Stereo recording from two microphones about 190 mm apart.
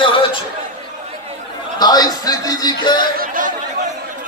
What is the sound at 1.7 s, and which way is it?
A man's voice, 20° left (ahead or behind).